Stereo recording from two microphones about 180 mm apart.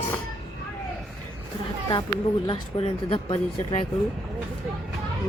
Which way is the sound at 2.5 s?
30° left (ahead or behind).